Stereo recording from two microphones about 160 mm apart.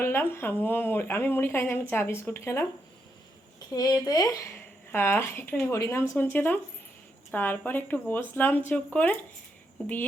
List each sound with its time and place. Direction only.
0.0 s speech: 15° left (ahead or behind)
3.8 s speech: 25° left (ahead or behind); by 9.1 s 10° left (ahead or behind)